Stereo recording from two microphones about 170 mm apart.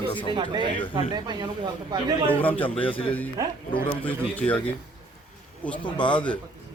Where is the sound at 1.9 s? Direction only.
25° right (ahead or behind).